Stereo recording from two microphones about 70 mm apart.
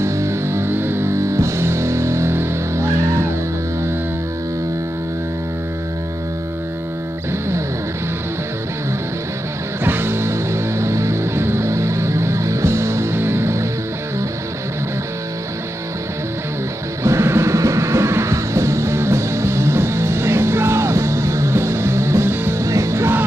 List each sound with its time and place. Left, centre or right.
0.0 s music: right
9.8 s music: right
17.0 s music: right
22.6 s music: right